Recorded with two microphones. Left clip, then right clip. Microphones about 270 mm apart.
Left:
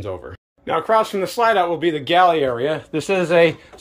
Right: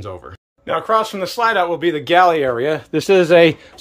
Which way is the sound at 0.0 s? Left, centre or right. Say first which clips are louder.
Left 2 dB; centre.